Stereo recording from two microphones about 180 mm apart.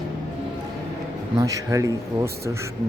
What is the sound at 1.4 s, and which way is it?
Speech, 20° right (ahead or behind).